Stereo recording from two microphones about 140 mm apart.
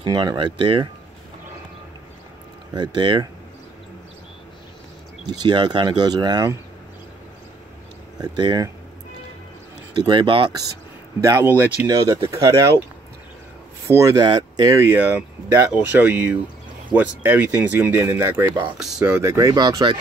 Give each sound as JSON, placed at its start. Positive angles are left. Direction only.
{"t": 0.0, "sound": "speech", "side_deg": -30}
{"t": 2.7, "sound": "speech", "side_deg": -30}
{"t": 5.2, "sound": "speech", "side_deg": -30}
{"t": 8.2, "sound": "speech", "side_deg": -30}
{"t": 9.9, "sound": "speech", "side_deg": -35}
{"t": 11.1, "sound": "speech", "side_deg": -20}
{"t": 13.8, "sound": "speech", "side_deg": -20}
{"t": 18.8, "sound": "speech", "side_deg": 0}
{"t": 19.0, "sound": "speech", "side_deg": -15}